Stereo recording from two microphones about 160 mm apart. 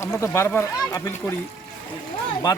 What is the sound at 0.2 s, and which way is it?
Speech, 15° left (ahead or behind).